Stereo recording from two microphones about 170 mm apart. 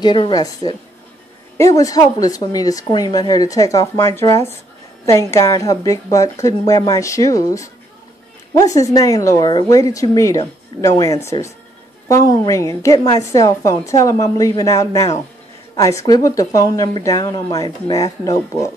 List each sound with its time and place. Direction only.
0.0 s a woman's voice: 25° left (ahead or behind)